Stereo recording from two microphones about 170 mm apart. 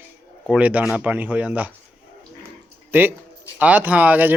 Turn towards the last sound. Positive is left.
turn(degrees=-10)  # may be behind; listen again after turning